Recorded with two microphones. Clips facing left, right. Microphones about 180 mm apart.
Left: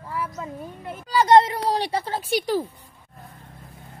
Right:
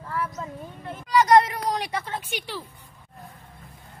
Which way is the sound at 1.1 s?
30° left (ahead or behind).